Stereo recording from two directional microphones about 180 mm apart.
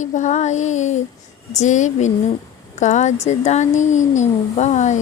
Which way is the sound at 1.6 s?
40° left (ahead or behind).